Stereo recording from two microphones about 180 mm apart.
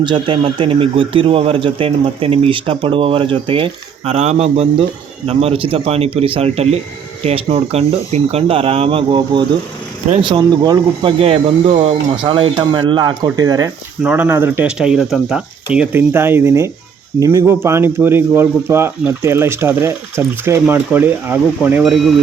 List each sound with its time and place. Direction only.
0.0 s speech: 25° right (ahead or behind)
11.2 s speech: 35° right (ahead or behind); by 22.1 s centre (ahead or behind)